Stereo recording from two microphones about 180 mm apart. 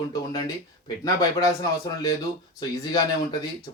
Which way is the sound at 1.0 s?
20° left (ahead or behind).